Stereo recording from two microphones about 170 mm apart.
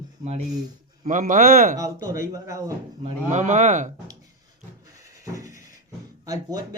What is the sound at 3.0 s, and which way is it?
Speech, 45° right (ahead or behind).